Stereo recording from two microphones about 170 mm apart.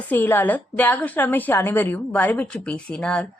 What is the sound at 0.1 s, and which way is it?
A woman's voice, 10° left (ahead or behind).